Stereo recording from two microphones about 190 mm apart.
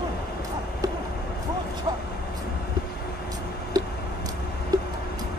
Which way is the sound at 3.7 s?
20° right (ahead or behind).